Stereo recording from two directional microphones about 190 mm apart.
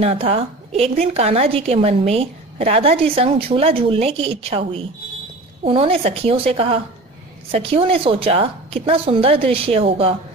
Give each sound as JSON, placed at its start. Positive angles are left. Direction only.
{"t": 0.0, "sound": "a woman's voice", "side_deg": -30}